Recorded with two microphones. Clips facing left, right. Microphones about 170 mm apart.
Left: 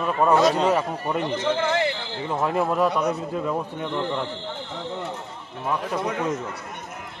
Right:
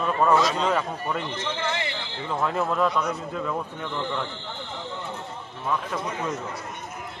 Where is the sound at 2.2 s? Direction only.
15° left (ahead or behind).